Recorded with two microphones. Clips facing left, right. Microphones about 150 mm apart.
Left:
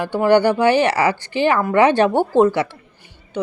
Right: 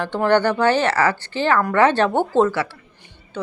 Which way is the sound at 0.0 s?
10° left (ahead or behind).